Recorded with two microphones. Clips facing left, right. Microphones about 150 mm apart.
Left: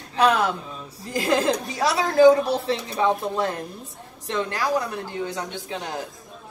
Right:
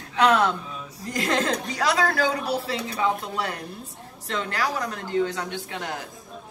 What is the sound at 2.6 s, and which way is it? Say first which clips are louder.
A woman's voice: left 3 dB; 25° left (ahead or behind).